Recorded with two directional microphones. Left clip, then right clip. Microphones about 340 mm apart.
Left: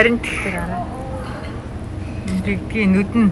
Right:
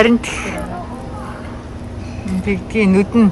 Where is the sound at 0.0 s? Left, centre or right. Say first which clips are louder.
Right 2 dB; centre.